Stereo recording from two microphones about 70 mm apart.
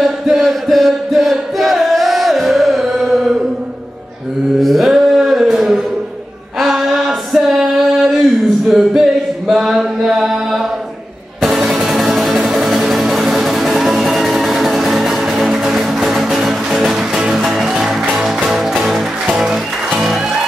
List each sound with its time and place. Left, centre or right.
0.0 s chant: centre
4.6 s a sound: centre
8.6 s music: centre
9.5 s chant: centre
11.4 s music: centre